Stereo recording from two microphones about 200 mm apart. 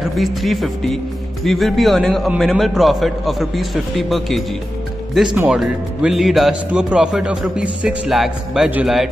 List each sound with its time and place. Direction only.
0.0 s speech: centre (ahead or behind)